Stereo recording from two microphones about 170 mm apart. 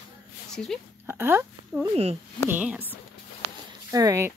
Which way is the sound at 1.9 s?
40° right (ahead or behind).